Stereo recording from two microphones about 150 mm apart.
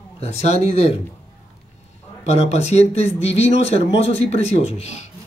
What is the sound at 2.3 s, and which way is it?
Speech, 45° left (ahead or behind).